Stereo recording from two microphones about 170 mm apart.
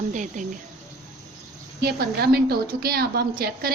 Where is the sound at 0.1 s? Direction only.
45° right (ahead or behind).